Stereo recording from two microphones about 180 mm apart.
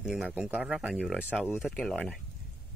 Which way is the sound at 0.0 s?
5° right (ahead or behind).